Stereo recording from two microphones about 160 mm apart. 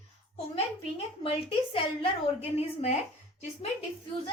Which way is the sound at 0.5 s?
40° left (ahead or behind).